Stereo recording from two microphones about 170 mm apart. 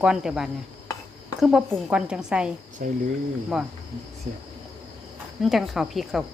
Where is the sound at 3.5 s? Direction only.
Centre (ahead or behind).